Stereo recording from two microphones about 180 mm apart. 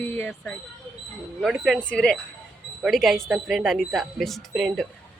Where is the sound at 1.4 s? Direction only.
Centre (ahead or behind).